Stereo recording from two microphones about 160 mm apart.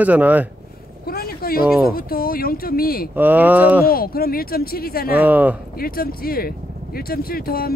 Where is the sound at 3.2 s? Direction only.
10° right (ahead or behind).